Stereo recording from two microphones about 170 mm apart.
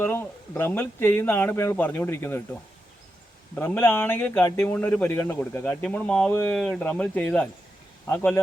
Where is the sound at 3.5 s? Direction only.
15° left (ahead or behind).